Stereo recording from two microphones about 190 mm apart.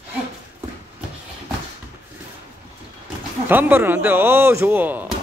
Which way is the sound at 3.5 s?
10° right (ahead or behind).